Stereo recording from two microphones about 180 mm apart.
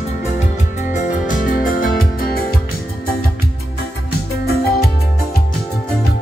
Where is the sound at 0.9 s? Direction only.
45° left (ahead or behind).